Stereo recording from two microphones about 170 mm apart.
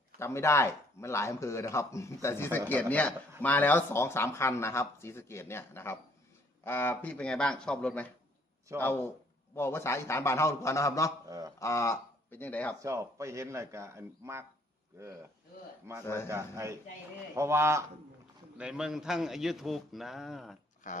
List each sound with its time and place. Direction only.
0.2 s speech: 15° left (ahead or behind)
11.3 s a sound: 20° right (ahead or behind)
11.6 s speech: 15° left (ahead or behind)
12.8 s speech: 15° right (ahead or behind)
15.9 s speech: 15° right (ahead or behind)
18.5 s speech: 5° right (ahead or behind)
20.9 s speech: 50° left (ahead or behind)